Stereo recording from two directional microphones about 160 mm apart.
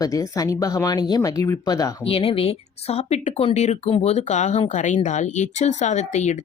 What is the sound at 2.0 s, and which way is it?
Speech, 35° left (ahead or behind).